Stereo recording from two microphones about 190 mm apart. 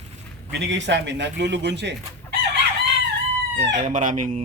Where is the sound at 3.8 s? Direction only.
40° right (ahead or behind).